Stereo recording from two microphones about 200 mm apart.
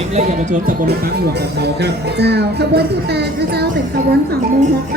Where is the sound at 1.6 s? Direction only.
55° right (ahead or behind).